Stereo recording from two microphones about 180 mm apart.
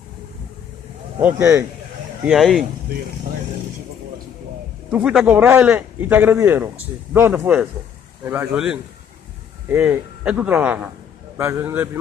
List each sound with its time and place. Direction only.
1.2 s speech: 10° right (ahead or behind)
4.9 s speech: 5° right (ahead or behind)